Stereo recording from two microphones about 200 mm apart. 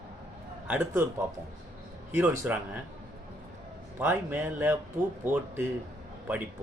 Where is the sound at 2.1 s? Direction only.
10° right (ahead or behind).